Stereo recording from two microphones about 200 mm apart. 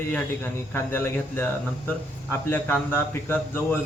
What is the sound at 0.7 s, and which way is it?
A man's voice, 10° left (ahead or behind).